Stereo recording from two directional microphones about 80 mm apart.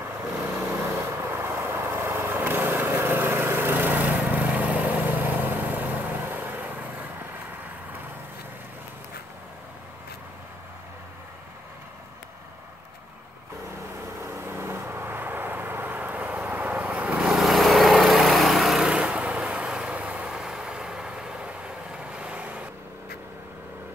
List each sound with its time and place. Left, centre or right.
0.4 s vehicle: right
14.2 s vehicle: right; by 17.3 s centre
17.3 s vehicle: centre
18.9 s vehicle: centre